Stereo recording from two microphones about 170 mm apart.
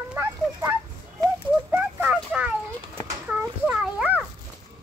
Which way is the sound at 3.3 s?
10° right (ahead or behind).